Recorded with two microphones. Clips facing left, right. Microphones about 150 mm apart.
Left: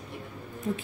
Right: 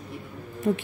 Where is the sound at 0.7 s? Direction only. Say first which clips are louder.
Right 7 dB; 70° right (ahead or behind).